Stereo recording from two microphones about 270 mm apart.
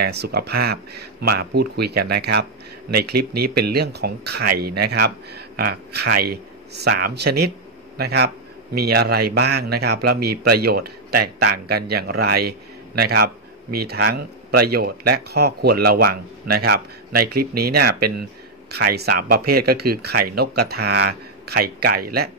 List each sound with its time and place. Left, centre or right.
0.0 s a man's voice: right